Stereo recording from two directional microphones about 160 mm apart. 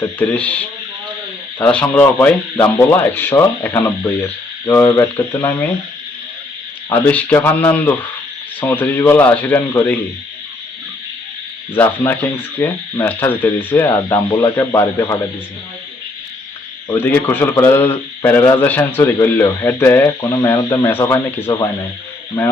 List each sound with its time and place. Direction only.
0.2 s a man's voice: 10° left (ahead or behind)
6.9 s a man's voice: 10° left (ahead or behind)
11.7 s a man's voice: 10° left (ahead or behind)
14.2 s a man's voice: 25° left (ahead or behind)
16.9 s a man's voice: 15° left (ahead or behind)